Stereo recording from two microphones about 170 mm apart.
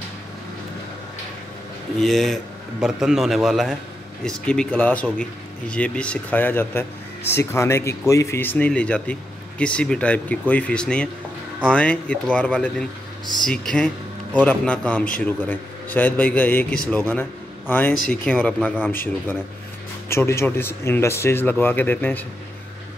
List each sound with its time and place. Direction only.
2.0 s a man's voice: centre (ahead or behind)
20.1 s a man's voice: 15° left (ahead or behind)